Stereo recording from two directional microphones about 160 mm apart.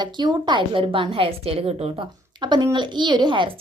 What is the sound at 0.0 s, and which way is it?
A woman's voice, 30° right (ahead or behind).